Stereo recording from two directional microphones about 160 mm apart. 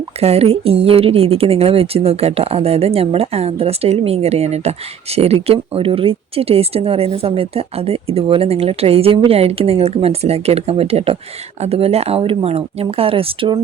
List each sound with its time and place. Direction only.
0.2 s speech: 40° right (ahead or behind)